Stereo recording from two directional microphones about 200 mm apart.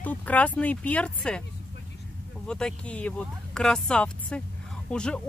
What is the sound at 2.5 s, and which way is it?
Speech, 5° left (ahead or behind).